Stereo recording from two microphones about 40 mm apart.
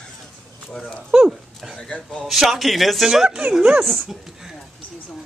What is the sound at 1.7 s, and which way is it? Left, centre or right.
Speech, left.